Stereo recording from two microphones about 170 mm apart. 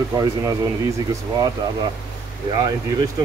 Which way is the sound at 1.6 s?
25° right (ahead or behind).